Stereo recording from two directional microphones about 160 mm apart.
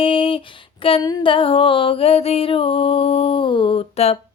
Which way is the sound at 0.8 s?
30° left (ahead or behind).